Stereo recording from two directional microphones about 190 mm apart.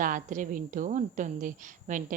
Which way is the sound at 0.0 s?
45° right (ahead or behind).